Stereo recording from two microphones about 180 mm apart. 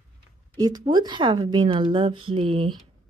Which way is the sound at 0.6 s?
20° right (ahead or behind).